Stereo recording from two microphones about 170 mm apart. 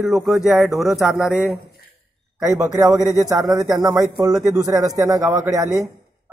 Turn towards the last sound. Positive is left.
turn(degrees=-20)  # may be behind; listen again after turning